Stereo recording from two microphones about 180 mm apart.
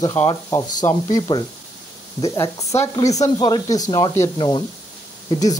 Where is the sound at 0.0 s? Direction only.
10° left (ahead or behind).